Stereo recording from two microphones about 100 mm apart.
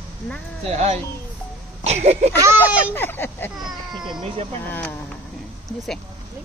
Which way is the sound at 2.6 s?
15° right (ahead or behind).